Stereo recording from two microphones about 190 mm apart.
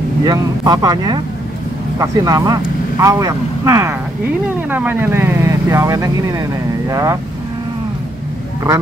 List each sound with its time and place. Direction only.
0.2 s speech: 20° right (ahead or behind)